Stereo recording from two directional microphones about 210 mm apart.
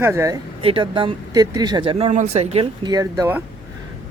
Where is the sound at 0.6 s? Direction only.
25° right (ahead or behind).